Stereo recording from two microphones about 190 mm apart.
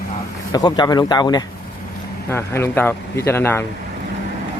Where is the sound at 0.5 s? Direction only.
20° left (ahead or behind).